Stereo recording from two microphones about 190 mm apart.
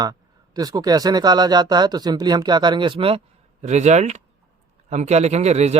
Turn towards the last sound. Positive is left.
turn(degrees=-35)  # may be behind; listen again after turning